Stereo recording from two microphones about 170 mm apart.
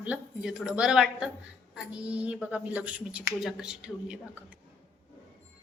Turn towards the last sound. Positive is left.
turn(degrees=-5)  # may be behind; listen again after turning